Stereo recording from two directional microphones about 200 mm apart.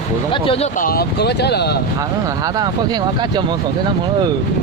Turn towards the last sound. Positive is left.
turn(degrees=-20)  # may be behind; listen again after turning